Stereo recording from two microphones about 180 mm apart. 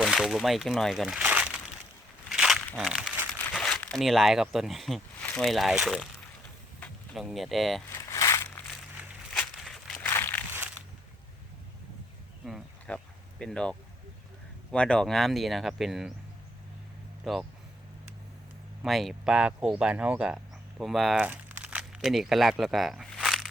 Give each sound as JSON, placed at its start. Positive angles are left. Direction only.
{"t": 0.0, "sound": "speech", "side_deg": 0}
{"t": 6.7, "sound": "a sound", "side_deg": 10}
{"t": 7.2, "sound": "speech", "side_deg": 0}
{"t": 7.9, "sound": "crushing", "side_deg": 20}
{"t": 9.6, "sound": "a sound", "side_deg": 0}
{"t": 12.5, "sound": "insect", "side_deg": 0}
{"t": 13.4, "sound": "speech", "side_deg": 5}
{"t": 17.2, "sound": "speech", "side_deg": 0}
{"t": 18.8, "sound": "speech", "side_deg": 0}